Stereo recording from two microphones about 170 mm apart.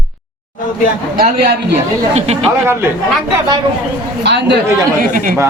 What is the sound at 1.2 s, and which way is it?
Speech, 70° right (ahead or behind).